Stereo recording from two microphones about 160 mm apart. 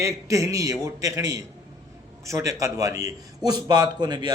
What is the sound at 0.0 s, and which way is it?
A man's voice, 20° right (ahead or behind).